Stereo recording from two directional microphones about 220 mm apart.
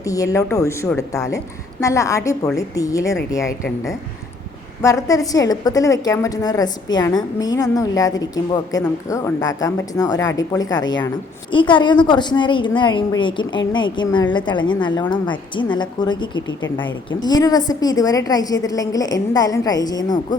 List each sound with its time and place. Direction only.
0.0 s a woman's voice: 15° left (ahead or behind)
16.5 s speech: 60° left (ahead or behind)
17.1 s a woman's voice: 20° left (ahead or behind)